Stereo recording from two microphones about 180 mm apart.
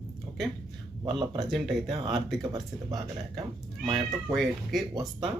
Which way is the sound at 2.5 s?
25° right (ahead or behind).